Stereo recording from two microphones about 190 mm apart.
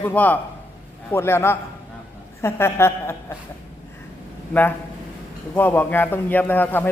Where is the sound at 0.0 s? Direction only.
10° left (ahead or behind).